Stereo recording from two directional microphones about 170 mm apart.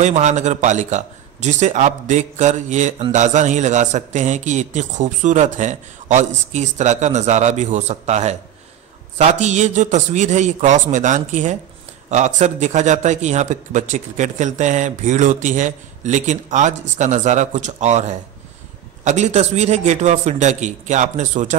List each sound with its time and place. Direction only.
0.0 s a man's voice: 45° right (ahead or behind)